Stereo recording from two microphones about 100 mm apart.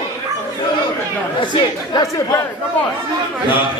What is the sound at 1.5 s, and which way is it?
Speech, 45° left (ahead or behind).